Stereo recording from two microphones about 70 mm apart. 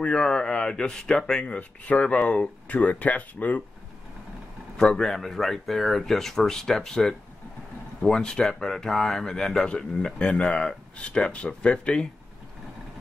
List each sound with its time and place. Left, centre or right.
0.0 s speech: centre
4.7 s speech: centre